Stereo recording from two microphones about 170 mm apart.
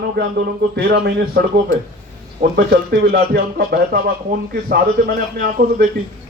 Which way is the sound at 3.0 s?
70° right (ahead or behind).